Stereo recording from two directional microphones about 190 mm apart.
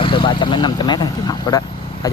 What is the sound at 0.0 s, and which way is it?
Speech, 25° left (ahead or behind).